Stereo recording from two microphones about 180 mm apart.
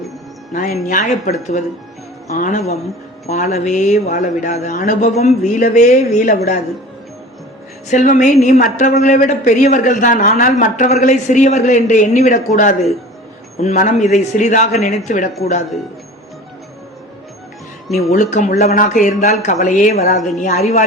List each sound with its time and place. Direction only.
0.5 s a man's voice: 45° left (ahead or behind)
7.9 s a man's voice: 45° left (ahead or behind)
18.1 s a man's voice: 45° left (ahead or behind)